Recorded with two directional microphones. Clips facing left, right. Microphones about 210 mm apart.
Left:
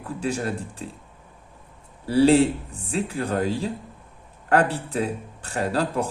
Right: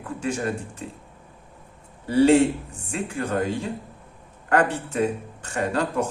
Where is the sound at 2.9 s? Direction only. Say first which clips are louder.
Left 1 dB; 35° left (ahead or behind).